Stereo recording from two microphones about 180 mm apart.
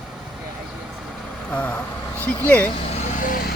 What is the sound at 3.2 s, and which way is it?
Speech, 50° left (ahead or behind).